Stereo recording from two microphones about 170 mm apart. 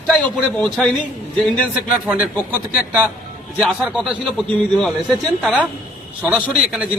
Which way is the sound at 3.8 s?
5° right (ahead or behind).